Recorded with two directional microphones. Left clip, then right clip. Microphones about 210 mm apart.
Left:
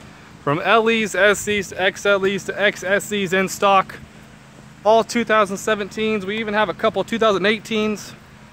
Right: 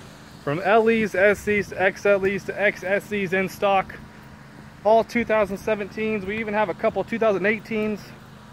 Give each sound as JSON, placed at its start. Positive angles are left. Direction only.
{"t": 0.5, "sound": "speech", "side_deg": 35}
{"t": 5.1, "sound": "speech", "side_deg": 25}